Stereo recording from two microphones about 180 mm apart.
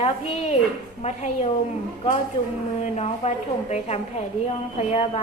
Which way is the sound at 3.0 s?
40° left (ahead or behind).